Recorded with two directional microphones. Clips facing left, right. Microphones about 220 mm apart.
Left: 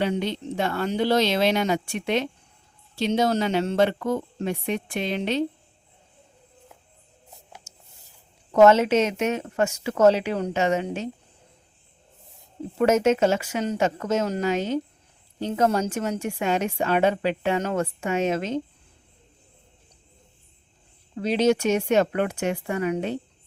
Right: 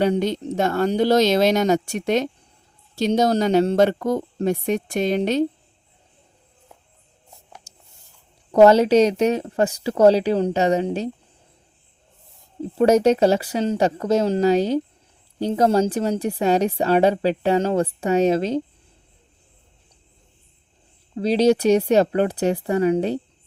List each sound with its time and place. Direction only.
0.0 s a woman's voice: 40° right (ahead or behind)
7.7 s a sound: 35° right (ahead or behind)
8.5 s a woman's voice: 35° right (ahead or behind)
12.8 s a woman's voice: 35° right (ahead or behind)
21.2 s a woman's voice: 35° right (ahead or behind)